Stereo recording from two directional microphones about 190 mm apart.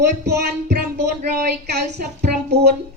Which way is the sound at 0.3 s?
60° right (ahead or behind).